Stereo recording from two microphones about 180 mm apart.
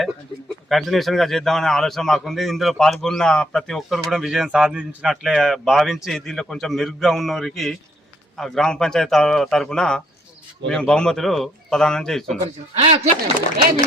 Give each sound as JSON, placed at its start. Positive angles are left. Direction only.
{"t": 0.0, "sound": "speech", "side_deg": 0}
{"t": 12.4, "sound": "speech", "side_deg": -35}